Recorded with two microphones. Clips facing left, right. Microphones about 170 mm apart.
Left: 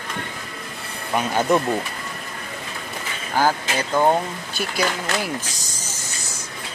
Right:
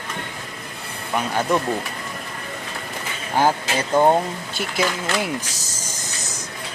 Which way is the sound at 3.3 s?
25° right (ahead or behind).